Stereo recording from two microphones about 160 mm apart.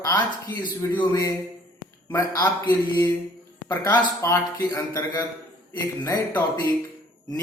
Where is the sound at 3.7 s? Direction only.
25° left (ahead or behind).